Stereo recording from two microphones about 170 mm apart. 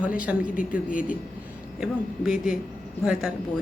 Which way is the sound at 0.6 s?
50° left (ahead or behind).